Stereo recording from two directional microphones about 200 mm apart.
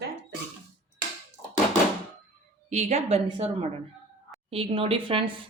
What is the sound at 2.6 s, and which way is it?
A woman's voice, 35° right (ahead or behind).